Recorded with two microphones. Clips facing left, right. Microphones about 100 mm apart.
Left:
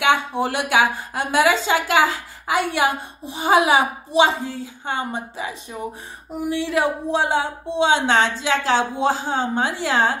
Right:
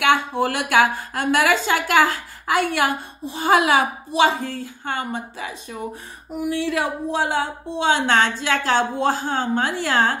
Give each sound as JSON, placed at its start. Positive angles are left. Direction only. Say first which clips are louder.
{"t": 0.0, "sound": "a woman's voice", "louder": "right 1 dB", "side_deg": 20}